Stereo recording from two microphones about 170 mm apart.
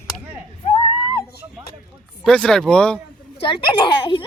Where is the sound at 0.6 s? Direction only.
35° left (ahead or behind).